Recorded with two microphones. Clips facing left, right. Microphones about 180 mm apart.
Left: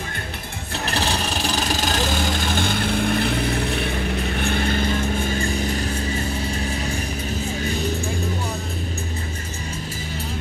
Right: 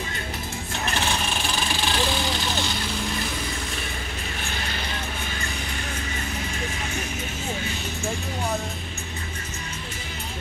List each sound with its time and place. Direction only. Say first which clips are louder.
0.8 s vehicle: left 3 dB; 35° left (ahead or behind); by 4.8 s 55° left (ahead or behind)